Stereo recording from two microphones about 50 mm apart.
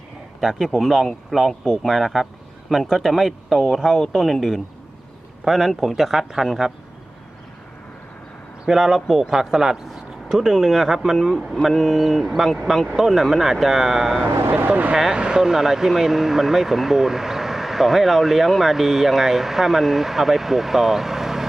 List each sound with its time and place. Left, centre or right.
0.3 s speech: centre
8.6 s speech: centre
14.5 s speech: right
14.9 s speech: centre